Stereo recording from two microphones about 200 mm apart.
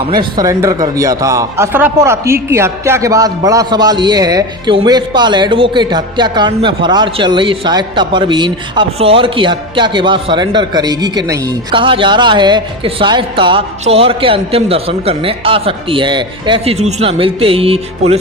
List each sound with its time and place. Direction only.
0.1 s speech: 20° right (ahead or behind)